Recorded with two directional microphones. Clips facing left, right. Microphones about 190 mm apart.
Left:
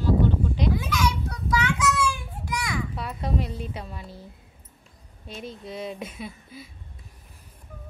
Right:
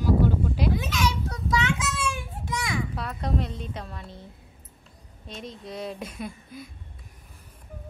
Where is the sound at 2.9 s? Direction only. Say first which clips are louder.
Even; centre (ahead or behind).